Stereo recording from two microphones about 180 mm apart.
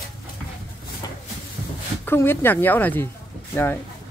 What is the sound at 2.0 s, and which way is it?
Speech, 10° left (ahead or behind).